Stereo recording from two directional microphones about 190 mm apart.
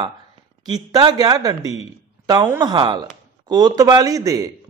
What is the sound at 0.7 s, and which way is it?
A man's voice, 20° right (ahead or behind).